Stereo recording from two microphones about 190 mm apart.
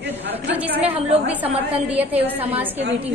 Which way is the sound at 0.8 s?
35° right (ahead or behind).